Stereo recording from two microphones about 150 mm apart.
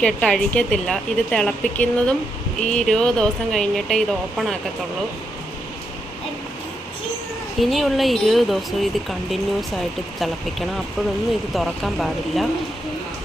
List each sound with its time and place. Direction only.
0.0 s speech: 5° left (ahead or behind)
7.6 s speech: centre (ahead or behind)
11.5 s speech: centre (ahead or behind)